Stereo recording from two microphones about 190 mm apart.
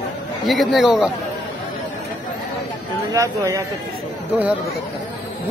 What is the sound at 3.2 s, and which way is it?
Speech, 15° right (ahead or behind).